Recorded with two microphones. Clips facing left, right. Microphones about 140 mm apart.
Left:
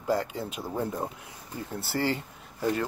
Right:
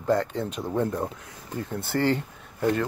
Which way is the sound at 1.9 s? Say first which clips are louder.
Right 5 dB; 55° right (ahead or behind).